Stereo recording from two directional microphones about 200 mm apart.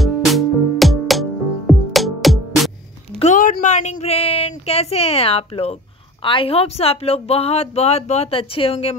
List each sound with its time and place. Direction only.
0.0 s music: centre (ahead or behind)
3.2 s a sound: 40° left (ahead or behind)
6.2 s speech: 25° left (ahead or behind)